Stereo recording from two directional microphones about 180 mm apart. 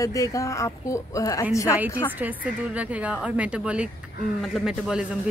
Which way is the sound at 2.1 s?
10° right (ahead or behind).